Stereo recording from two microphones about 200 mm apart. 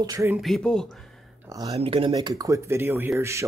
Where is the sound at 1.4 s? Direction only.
15° right (ahead or behind).